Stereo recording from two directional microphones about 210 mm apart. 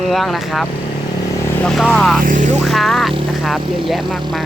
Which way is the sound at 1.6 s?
Centre (ahead or behind).